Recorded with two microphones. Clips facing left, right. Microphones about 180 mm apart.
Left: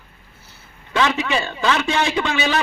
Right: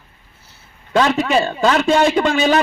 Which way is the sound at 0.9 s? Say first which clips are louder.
Right 5 dB; 45° right (ahead or behind).